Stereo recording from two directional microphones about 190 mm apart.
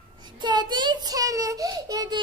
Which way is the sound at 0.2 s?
25° right (ahead or behind).